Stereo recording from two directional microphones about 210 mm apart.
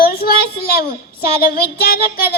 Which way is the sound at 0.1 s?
45° left (ahead or behind).